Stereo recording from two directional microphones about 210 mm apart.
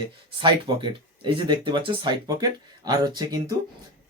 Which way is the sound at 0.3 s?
20° right (ahead or behind).